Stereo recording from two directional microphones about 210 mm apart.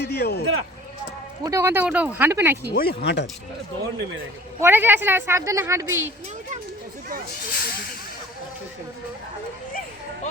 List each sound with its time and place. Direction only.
0.0 s speech: 50° left (ahead or behind)
1.5 s a woman's voice: 15° right (ahead or behind)
2.7 s speech: 50° left (ahead or behind)
4.6 s a woman's voice: 10° right (ahead or behind)
7.5 s speech: 50° left (ahead or behind)